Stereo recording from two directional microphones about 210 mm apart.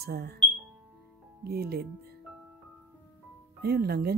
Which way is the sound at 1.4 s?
50° right (ahead or behind).